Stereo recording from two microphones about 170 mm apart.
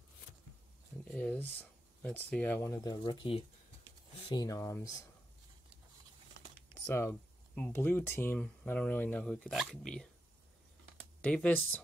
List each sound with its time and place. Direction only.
1.1 s speech: 10° left (ahead or behind); by 3.4 s 30° left (ahead or behind)
4.3 s speech: 20° left (ahead or behind)
6.4 s a sound: 90° right
6.9 s speech: 15° left (ahead or behind)
11.1 s speech: 5° left (ahead or behind)